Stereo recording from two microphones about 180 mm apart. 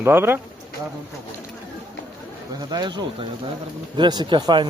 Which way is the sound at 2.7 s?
25° right (ahead or behind).